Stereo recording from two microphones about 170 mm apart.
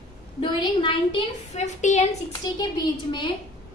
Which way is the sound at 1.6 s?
45° left (ahead or behind).